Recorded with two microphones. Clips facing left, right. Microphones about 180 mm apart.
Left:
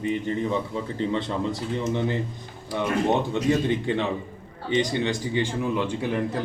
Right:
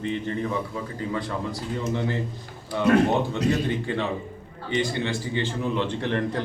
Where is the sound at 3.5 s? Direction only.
20° left (ahead or behind).